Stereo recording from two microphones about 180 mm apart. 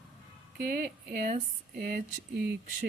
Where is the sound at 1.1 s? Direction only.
50° right (ahead or behind).